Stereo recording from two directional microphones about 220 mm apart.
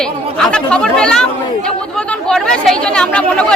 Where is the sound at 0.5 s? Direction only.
5° left (ahead or behind).